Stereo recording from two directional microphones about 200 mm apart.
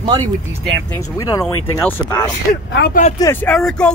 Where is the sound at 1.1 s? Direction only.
20° left (ahead or behind).